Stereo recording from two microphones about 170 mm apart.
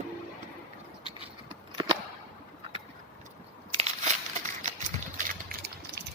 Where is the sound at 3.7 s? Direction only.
40° right (ahead or behind).